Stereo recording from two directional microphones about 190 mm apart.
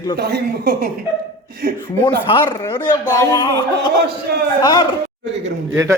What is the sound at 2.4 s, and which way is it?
A man's voice, 20° left (ahead or behind).